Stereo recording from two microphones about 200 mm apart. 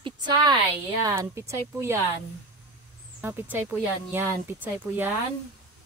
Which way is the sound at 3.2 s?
10° right (ahead or behind).